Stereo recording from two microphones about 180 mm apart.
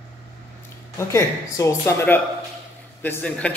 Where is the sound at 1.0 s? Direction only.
15° left (ahead or behind).